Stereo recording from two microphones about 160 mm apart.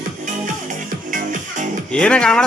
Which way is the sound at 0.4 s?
55° right (ahead or behind).